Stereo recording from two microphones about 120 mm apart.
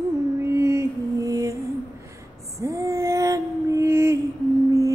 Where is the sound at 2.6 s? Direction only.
25° right (ahead or behind).